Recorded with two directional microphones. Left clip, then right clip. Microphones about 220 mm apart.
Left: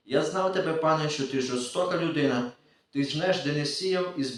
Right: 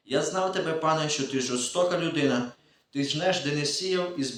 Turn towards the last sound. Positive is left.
turn(degrees=-40)  # may be behind; listen again after turning